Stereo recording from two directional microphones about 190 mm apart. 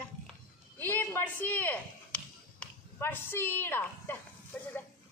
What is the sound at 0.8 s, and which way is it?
Speech, 10° left (ahead or behind).